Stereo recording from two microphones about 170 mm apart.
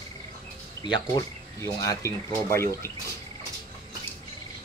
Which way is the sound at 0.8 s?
20° left (ahead or behind).